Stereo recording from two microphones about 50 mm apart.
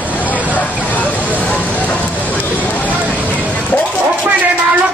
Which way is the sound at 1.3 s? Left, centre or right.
Left.